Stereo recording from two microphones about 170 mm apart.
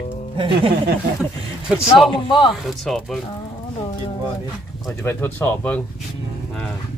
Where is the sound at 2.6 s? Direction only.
Centre (ahead or behind).